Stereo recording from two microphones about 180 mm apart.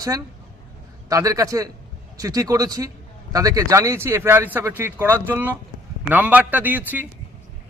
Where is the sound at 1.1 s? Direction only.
20° right (ahead or behind).